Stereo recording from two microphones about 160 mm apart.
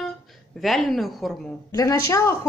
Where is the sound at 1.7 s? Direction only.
20° left (ahead or behind).